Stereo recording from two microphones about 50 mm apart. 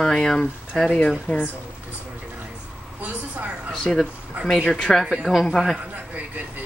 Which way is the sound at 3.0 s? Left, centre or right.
Right.